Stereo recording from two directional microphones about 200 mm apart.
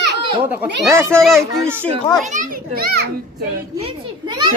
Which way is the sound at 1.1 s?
Centre (ahead or behind).